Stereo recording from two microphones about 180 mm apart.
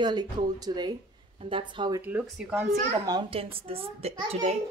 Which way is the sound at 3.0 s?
25° right (ahead or behind).